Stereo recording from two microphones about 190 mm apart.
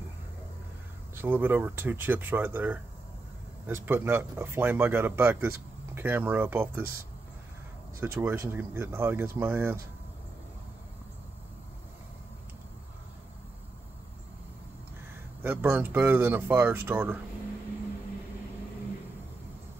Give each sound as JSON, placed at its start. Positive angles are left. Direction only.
{"t": 1.1, "sound": "speech", "side_deg": -10}
{"t": 8.0, "sound": "speech", "side_deg": -10}
{"t": 15.4, "sound": "speech", "side_deg": -10}